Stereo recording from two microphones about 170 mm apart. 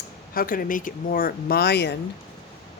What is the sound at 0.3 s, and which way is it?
Speech, 55° left (ahead or behind).